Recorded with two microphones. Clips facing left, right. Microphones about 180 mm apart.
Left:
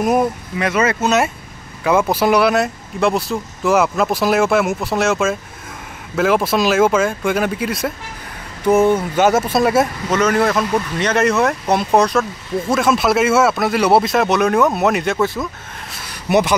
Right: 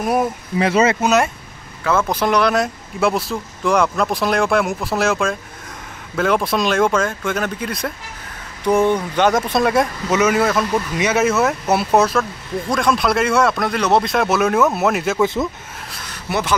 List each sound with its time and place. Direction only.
0.0 s speech: centre (ahead or behind)
0.6 s speech: 30° right (ahead or behind)
1.9 s speech: 10° left (ahead or behind)
16.1 s a sound: 15° left (ahead or behind)